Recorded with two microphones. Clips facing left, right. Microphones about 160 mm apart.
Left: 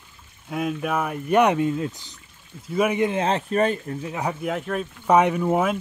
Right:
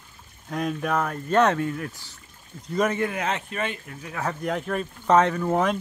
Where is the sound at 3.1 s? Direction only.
30° left (ahead or behind).